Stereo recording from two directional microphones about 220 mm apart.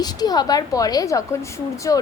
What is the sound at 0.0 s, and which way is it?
A woman's voice, 20° left (ahead or behind).